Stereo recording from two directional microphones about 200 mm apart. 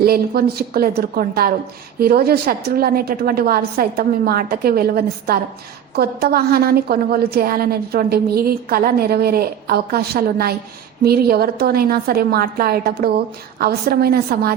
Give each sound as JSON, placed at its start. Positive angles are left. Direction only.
{"t": 0.0, "sound": "a woman's voice", "side_deg": -50}